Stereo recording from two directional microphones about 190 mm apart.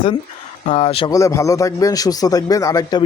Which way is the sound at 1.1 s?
15° left (ahead or behind).